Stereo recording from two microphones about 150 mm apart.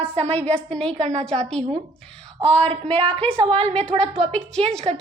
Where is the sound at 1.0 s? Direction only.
50° right (ahead or behind).